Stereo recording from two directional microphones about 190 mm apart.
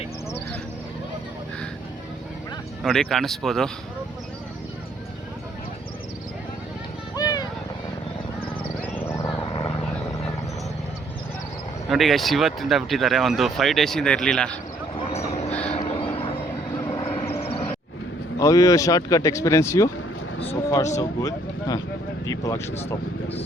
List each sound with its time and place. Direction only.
2.8 s speech: centre (ahead or behind)
7.2 s vehicle: 20° left (ahead or behind)
9.0 s wild animals: 15° left (ahead or behind)
11.9 s speech: centre (ahead or behind)
15.8 s a sound: 30° left (ahead or behind)
18.3 s speech: 15° left (ahead or behind)